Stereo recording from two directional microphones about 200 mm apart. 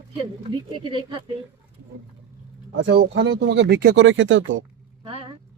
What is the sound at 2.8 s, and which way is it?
Speech, 60° right (ahead or behind).